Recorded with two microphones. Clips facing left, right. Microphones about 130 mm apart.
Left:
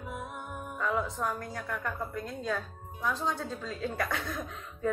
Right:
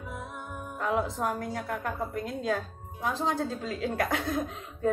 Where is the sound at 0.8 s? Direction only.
60° right (ahead or behind).